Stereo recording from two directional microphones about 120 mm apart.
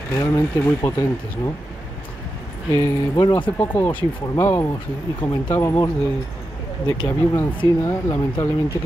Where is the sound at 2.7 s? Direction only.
25° left (ahead or behind).